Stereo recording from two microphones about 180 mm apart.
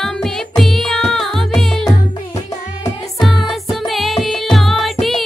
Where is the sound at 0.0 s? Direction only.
Centre (ahead or behind).